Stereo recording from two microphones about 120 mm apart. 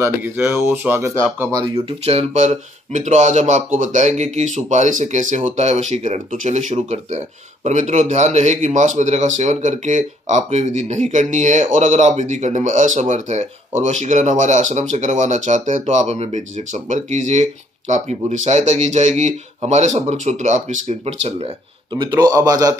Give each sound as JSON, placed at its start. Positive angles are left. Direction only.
{"t": 0.0, "sound": "speech", "side_deg": -20}
{"t": 1.5, "sound": "a man's voice", "side_deg": -35}
{"t": 2.0, "sound": "speech", "side_deg": -70}
{"t": 21.9, "sound": "a man's voice", "side_deg": -35}